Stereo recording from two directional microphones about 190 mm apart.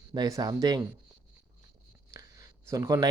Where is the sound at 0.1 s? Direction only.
20° right (ahead or behind).